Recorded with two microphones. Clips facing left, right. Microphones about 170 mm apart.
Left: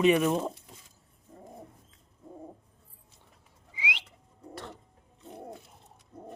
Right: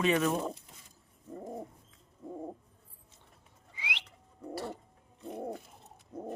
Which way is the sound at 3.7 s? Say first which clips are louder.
Left 5 dB; 10° left (ahead or behind).